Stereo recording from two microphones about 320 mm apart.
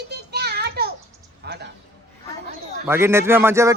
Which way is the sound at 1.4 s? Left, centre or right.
Right.